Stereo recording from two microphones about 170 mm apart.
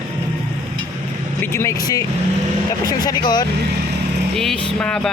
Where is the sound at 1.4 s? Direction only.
15° left (ahead or behind).